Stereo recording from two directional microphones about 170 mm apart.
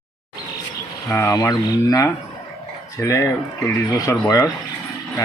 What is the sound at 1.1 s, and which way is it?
Speech, 15° left (ahead or behind).